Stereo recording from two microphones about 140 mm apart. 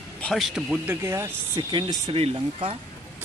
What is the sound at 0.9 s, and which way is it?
Speech, 15° right (ahead or behind).